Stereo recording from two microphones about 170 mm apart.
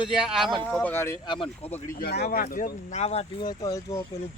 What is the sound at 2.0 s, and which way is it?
Speech, 65° left (ahead or behind).